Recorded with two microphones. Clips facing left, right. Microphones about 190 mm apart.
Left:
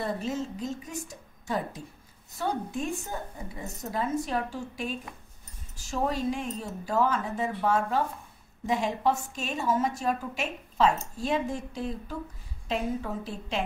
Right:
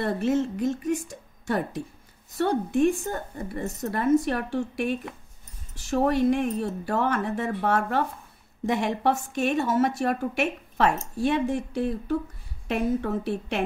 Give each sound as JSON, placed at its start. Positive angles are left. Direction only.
{"t": 0.0, "sound": "a woman's voice", "side_deg": -70}